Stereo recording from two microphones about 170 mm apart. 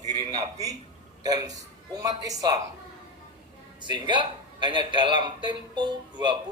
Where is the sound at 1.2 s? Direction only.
20° right (ahead or behind).